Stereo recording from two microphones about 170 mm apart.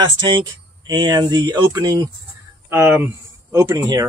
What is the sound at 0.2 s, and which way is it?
Speech, 25° right (ahead or behind).